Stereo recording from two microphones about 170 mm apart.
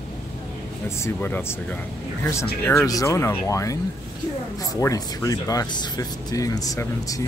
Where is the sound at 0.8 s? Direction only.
15° left (ahead or behind).